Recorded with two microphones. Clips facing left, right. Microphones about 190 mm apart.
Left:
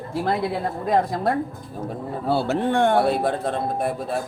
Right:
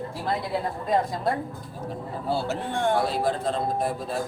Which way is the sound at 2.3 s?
60° left (ahead or behind).